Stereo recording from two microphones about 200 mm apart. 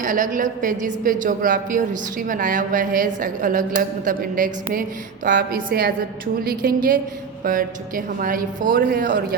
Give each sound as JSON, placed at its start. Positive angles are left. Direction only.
{"t": 0.0, "sound": "a woman's voice", "side_deg": -40}